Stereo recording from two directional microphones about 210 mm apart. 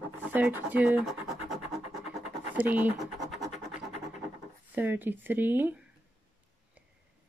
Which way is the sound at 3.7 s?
35° left (ahead or behind).